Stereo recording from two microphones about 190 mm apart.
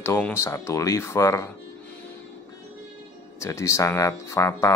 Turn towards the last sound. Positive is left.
turn(degrees=15)  # may be behind; listen again after turning